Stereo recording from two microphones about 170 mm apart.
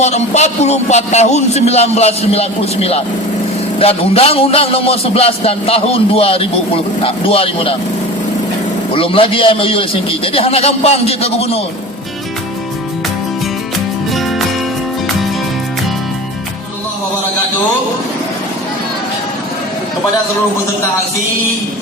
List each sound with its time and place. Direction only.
0.0 s a man's voice: 40° left (ahead or behind)
8.9 s a man's voice: 30° left (ahead or behind)
14.1 s music: centre (ahead or behind)